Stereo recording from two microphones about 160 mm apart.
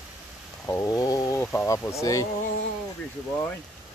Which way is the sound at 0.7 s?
20° left (ahead or behind).